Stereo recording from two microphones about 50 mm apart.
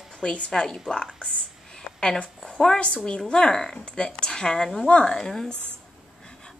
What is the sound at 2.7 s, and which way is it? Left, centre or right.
Speech, left.